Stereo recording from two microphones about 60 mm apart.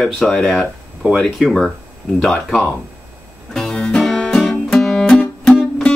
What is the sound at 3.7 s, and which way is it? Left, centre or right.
Music, centre.